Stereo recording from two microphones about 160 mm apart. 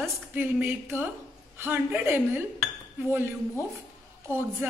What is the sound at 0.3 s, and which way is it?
A woman's voice, 15° right (ahead or behind).